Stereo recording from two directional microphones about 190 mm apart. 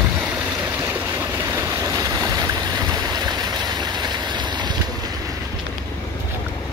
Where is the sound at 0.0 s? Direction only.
10° right (ahead or behind).